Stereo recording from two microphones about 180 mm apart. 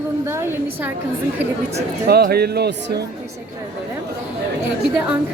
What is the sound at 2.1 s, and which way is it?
Speech, 60° right (ahead or behind).